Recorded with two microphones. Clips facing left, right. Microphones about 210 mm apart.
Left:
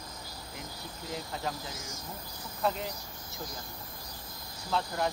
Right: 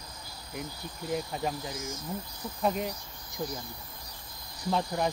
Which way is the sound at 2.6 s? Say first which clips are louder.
Right 2 dB; 15° right (ahead or behind).